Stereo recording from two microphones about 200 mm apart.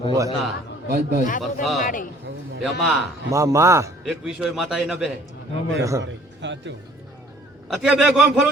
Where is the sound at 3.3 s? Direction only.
15° right (ahead or behind).